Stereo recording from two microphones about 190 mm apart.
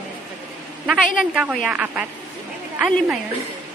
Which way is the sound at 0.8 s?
Centre (ahead or behind).